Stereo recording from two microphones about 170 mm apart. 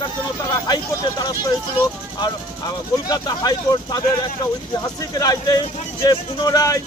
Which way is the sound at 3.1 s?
25° left (ahead or behind).